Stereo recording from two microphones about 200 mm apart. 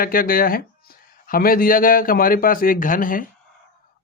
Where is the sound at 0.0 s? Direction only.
45° left (ahead or behind).